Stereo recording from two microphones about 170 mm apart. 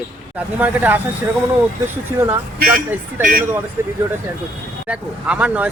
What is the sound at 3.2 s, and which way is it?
Speech, 55° right (ahead or behind).